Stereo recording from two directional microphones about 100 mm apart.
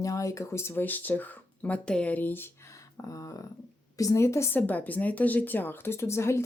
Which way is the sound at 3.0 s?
35° left (ahead or behind).